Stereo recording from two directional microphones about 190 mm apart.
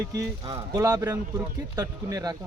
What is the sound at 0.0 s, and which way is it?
Speech, 15° right (ahead or behind).